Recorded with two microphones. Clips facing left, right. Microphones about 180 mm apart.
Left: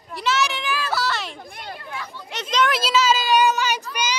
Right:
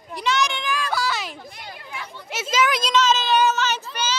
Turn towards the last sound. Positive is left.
turn(degrees=15)  # may be behind; listen again after turning